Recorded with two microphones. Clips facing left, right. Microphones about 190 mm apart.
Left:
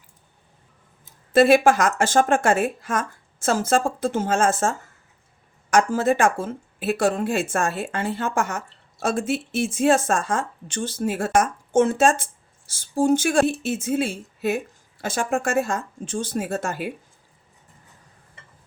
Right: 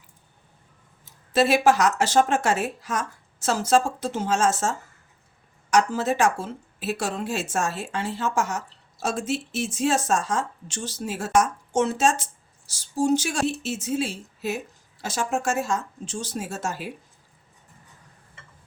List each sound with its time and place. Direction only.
1.3 s speech: 55° left (ahead or behind)
5.7 s speech: 50° left (ahead or behind)